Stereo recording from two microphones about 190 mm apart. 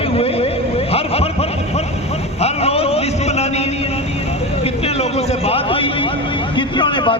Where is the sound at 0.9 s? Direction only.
30° left (ahead or behind).